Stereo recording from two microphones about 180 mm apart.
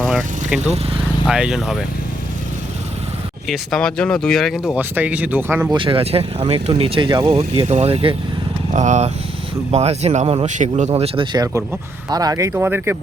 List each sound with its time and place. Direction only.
1.3 s speech: 5° right (ahead or behind)
3.4 s speech: centre (ahead or behind)
5.7 s speech: 30° right (ahead or behind); by 13.0 s 10° right (ahead or behind)